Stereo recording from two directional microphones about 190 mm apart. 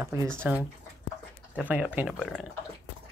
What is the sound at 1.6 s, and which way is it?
Speech, 5° right (ahead or behind).